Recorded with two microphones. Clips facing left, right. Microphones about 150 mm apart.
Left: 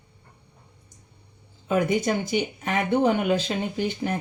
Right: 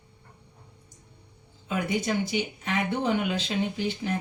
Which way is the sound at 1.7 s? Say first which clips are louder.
Left 5 dB; 50° left (ahead or behind).